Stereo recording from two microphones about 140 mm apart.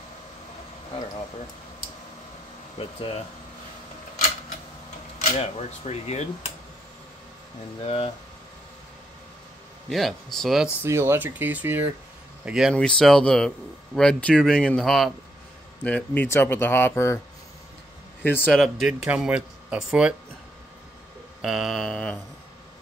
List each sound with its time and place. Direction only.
2.8 s speech: 40° left (ahead or behind)
5.2 s speech: 50° left (ahead or behind)
7.8 s speech: 45° left (ahead or behind)
9.8 s speech: centre (ahead or behind)
10.8 s speech: 20° right (ahead or behind)
12.4 s speech: 5° right (ahead or behind)
15.8 s speech: 10° left (ahead or behind)
18.2 s speech: 15° left (ahead or behind)
18.6 s speech: centre (ahead or behind)
21.4 s speech: centre (ahead or behind)